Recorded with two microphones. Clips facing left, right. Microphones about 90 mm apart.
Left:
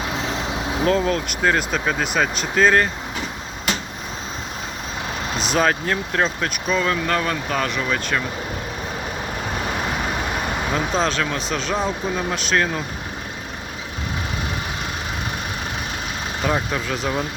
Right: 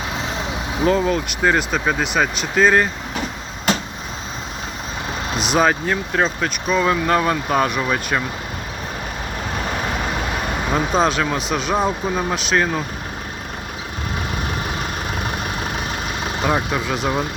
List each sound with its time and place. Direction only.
0.9 s speech: 5° right (ahead or behind)
5.5 s speech: 5° right (ahead or behind)
6.8 s speech: 15° right (ahead or behind)
10.7 s speech: 10° right (ahead or behind)
16.4 s speech: 10° right (ahead or behind)